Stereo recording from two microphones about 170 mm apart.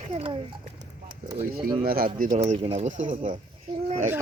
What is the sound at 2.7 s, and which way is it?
Speech, 40° right (ahead or behind).